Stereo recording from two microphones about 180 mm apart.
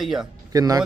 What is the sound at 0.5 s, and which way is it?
Speech, 20° right (ahead or behind).